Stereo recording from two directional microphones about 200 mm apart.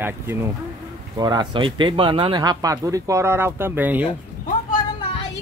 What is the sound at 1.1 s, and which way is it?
Speech, 20° right (ahead or behind).